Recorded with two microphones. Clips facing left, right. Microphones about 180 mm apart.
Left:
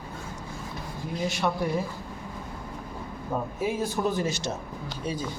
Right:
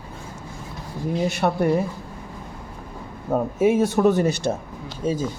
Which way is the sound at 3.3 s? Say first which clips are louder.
Right 10 dB; 80° right.